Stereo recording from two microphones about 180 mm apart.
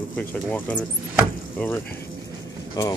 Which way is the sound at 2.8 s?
20° left (ahead or behind).